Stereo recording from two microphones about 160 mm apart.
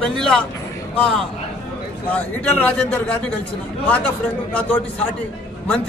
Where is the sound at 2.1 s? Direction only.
10° left (ahead or behind).